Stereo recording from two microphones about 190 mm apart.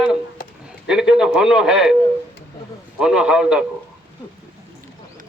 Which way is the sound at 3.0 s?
5° right (ahead or behind).